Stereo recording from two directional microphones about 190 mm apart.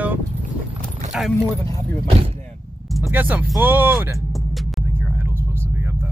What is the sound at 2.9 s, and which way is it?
Speech, 5° right (ahead or behind).